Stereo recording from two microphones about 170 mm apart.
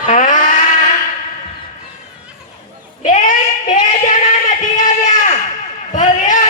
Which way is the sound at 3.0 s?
50° left (ahead or behind).